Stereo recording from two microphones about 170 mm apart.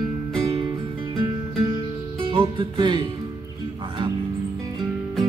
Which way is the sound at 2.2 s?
25° right (ahead or behind).